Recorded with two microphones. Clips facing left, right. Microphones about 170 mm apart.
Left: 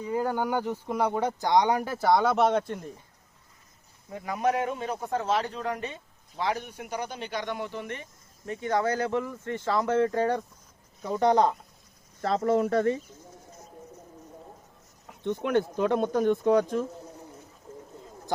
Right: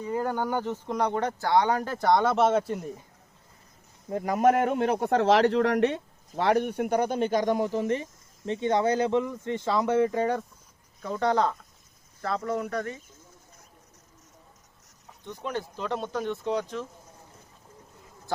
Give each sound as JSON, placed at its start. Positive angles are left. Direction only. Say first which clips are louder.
{"t": 0.1, "sound": "speech", "louder": "left 1 dB", "side_deg": 10}
{"t": 4.1, "sound": "a man's voice", "louder": "right 5 dB", "side_deg": -45}
{"t": 6.3, "sound": "speech", "louder": "right 7 dB", "side_deg": -55}
{"t": 8.4, "sound": "speech", "louder": "right 3 dB", "side_deg": -25}
{"t": 10.1, "sound": "speech", "louder": "even", "side_deg": 0}
{"t": 11.0, "sound": "speech", "louder": "left 3 dB", "side_deg": 15}
{"t": 12.2, "sound": "speech", "louder": "left 5 dB", "side_deg": 30}
{"t": 15.4, "sound": "speech", "louder": "left 7 dB", "side_deg": 60}